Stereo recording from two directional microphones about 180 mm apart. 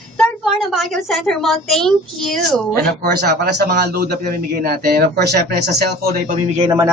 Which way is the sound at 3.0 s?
60° right (ahead or behind).